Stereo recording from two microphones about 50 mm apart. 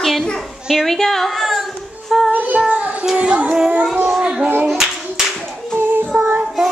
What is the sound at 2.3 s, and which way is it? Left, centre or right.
Child singing, right.